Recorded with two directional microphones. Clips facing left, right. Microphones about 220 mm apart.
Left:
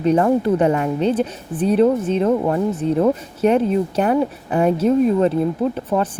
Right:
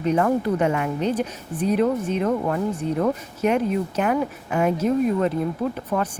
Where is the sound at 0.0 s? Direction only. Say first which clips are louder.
Left 5 dB; 30° left (ahead or behind).